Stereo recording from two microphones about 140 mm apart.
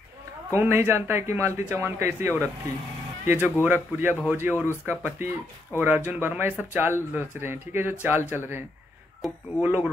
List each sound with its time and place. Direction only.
0.5 s speech: 15° right (ahead or behind)